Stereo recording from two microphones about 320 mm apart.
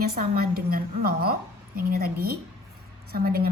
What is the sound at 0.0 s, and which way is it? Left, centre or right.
A woman's voice, right.